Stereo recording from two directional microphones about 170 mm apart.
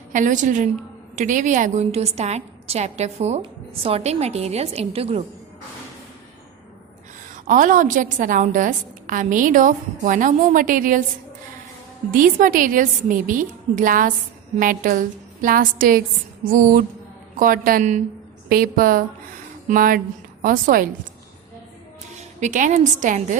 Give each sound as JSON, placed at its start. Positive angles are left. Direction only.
{"t": 0.1, "sound": "a woman's voice", "side_deg": -50}
{"t": 7.4, "sound": "a woman's voice", "side_deg": -50}
{"t": 12.1, "sound": "a woman's voice", "side_deg": -55}
{"t": 22.2, "sound": "a woman's voice", "side_deg": -45}